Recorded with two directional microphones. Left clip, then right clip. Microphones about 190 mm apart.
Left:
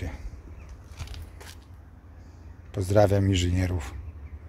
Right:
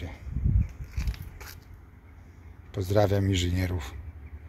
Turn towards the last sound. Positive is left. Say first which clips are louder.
# left 2 dB
turn(degrees=10)  # may be behind; listen again after turning